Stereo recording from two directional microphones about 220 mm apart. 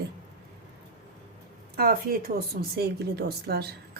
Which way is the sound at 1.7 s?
45° right (ahead or behind).